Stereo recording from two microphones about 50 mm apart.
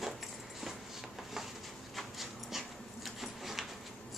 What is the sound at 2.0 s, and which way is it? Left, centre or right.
Dog, centre.